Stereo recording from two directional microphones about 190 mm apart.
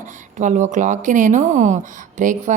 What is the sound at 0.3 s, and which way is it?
Speech, 40° right (ahead or behind).